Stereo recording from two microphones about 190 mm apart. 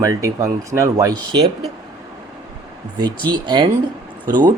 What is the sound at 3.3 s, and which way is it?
Speech, 25° right (ahead or behind).